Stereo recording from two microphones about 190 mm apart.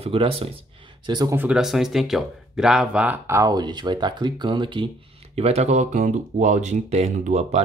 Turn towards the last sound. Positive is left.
turn(degrees=-35)  # may be behind; listen again after turning